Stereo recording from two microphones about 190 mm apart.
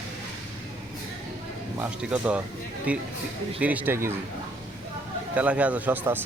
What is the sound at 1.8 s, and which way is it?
Speech, 5° right (ahead or behind).